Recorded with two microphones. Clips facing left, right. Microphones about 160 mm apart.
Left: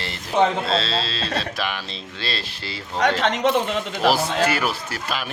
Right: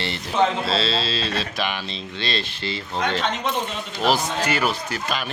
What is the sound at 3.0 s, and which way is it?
A man's voice, 85° left.